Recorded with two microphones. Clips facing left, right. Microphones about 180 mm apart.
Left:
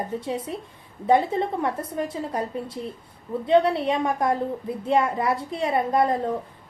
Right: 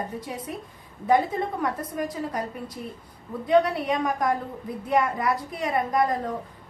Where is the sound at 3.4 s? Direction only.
25° left (ahead or behind).